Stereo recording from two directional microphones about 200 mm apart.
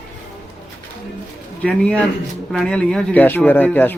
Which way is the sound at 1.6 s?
5° left (ahead or behind).